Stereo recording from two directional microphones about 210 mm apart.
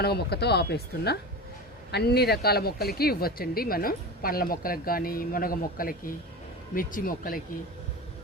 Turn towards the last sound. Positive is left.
turn(degrees=40)  # may be behind; listen again after turning